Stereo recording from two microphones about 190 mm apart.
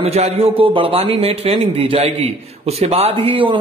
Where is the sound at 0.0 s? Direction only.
35° right (ahead or behind).